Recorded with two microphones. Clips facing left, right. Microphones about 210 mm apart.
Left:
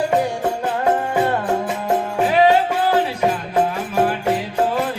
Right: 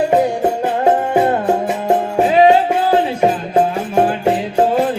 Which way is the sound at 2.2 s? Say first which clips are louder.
Right 4 dB; 25° right (ahead or behind).